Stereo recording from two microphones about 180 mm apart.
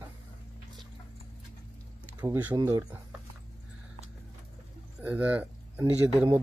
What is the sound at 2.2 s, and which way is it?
Speech, 20° right (ahead or behind).